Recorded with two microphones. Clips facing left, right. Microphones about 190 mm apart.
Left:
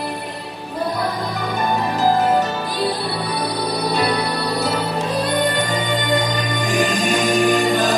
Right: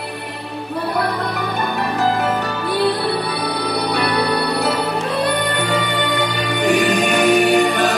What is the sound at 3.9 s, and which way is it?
Music, 65° right (ahead or behind).